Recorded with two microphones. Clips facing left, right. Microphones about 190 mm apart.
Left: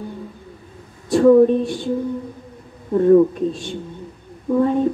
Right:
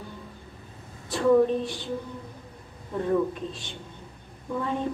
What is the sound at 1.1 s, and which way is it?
Speech, 45° left (ahead or behind).